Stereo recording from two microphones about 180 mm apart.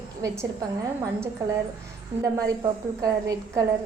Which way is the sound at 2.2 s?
20° right (ahead or behind).